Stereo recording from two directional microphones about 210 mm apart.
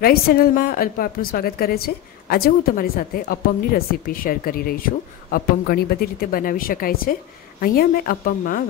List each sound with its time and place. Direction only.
0.0 s a woman's voice: 45° left (ahead or behind)